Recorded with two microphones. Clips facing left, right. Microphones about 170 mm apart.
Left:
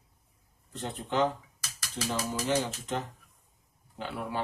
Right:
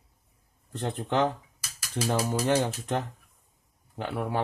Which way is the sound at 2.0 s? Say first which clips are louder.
Right 5 dB; 55° right (ahead or behind).